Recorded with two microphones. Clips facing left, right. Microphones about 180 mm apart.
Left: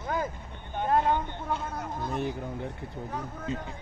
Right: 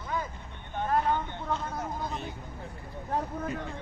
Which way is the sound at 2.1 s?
65° left (ahead or behind).